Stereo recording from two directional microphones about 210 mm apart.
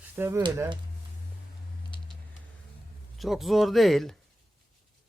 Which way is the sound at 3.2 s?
Centre (ahead or behind).